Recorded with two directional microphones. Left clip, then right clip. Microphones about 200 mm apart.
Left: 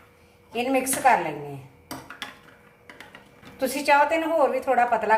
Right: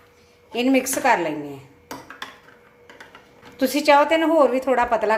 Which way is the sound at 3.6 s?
50° right (ahead or behind).